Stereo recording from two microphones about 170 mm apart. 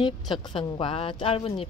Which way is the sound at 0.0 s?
25° left (ahead or behind).